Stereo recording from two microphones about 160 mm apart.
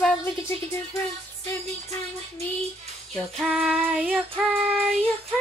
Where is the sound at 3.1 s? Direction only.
Centre (ahead or behind).